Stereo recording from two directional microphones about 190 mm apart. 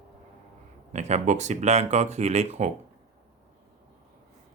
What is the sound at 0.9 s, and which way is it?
Speech, 35° right (ahead or behind).